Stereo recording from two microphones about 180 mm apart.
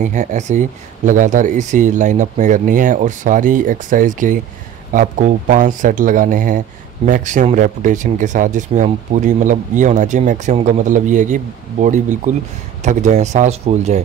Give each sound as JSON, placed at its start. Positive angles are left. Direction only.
{"t": 0.0, "sound": "speech", "side_deg": -45}